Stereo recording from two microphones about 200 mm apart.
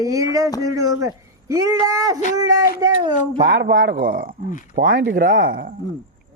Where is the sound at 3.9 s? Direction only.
45° right (ahead or behind).